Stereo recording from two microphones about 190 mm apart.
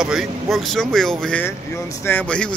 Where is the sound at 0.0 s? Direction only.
Centre (ahead or behind).